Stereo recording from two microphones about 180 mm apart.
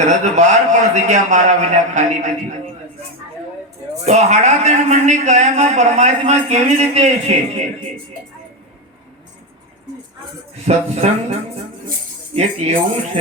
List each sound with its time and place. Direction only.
0.0 s a man's voice: 40° right (ahead or behind)
4.0 s a man's voice: 40° right (ahead or behind)
10.7 s a man's voice: 40° right (ahead or behind)